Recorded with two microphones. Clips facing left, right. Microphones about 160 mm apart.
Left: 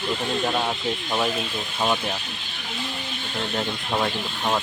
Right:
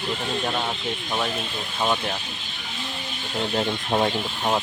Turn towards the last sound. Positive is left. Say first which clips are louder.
# right 1 dB
turn(degrees=-20)  # may be behind; listen again after turning